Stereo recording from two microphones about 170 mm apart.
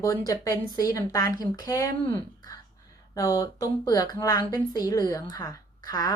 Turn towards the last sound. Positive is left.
turn(degrees=20)  # may be behind; listen again after turning